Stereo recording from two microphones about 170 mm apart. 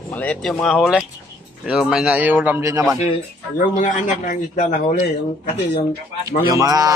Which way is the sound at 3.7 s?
50° left (ahead or behind).